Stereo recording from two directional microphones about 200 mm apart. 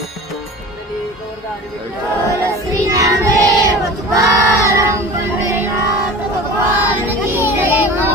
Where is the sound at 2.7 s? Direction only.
15° right (ahead or behind).